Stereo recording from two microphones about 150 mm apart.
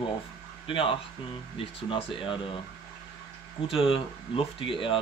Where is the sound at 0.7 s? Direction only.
35° left (ahead or behind).